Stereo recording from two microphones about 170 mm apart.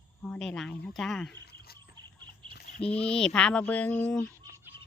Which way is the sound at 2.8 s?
35° left (ahead or behind).